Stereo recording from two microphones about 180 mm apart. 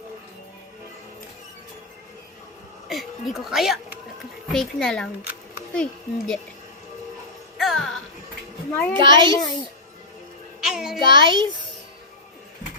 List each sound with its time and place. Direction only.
2.9 s speech: centre (ahead or behind)
7.6 s music: centre (ahead or behind)
8.7 s a child's voice: 10° left (ahead or behind)
9.0 s a child's voice: 25° right (ahead or behind)
10.6 s child singing: 5° right (ahead or behind)
11.0 s a child's voice: 25° right (ahead or behind)